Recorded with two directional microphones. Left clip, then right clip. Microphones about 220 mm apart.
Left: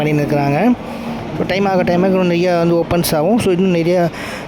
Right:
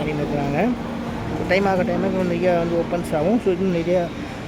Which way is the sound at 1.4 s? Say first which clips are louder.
Left 4 dB; 40° left (ahead or behind).